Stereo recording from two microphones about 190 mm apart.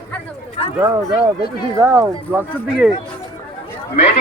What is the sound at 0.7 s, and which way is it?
Speech, 15° right (ahead or behind).